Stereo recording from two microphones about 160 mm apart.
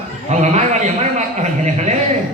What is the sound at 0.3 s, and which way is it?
Speech, 45° right (ahead or behind).